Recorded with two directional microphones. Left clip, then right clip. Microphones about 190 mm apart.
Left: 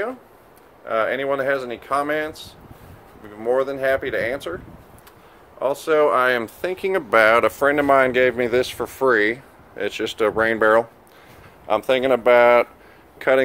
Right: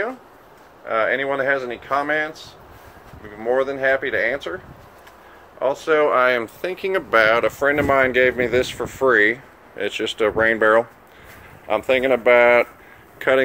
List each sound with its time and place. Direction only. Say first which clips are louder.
0.8 s speech: right 1 dB; 15° left (ahead or behind)
3.4 s speech: right 1 dB; 10° left (ahead or behind)
5.6 s speech: even; 10° left (ahead or behind); by 7.6 s 40° left (ahead or behind)
7.6 s speech: right 1 dB; 20° left (ahead or behind)